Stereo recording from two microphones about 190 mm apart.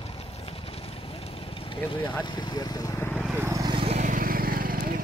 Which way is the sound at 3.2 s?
10° right (ahead or behind).